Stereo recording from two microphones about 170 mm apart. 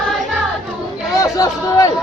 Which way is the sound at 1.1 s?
20° left (ahead or behind).